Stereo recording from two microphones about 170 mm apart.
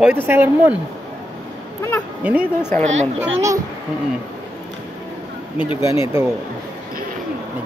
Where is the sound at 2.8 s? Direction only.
40° right (ahead or behind).